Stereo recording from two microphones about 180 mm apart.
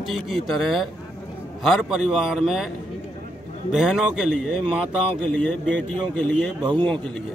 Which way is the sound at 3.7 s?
5° right (ahead or behind).